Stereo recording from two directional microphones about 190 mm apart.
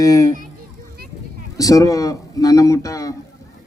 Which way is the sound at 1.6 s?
20° left (ahead or behind).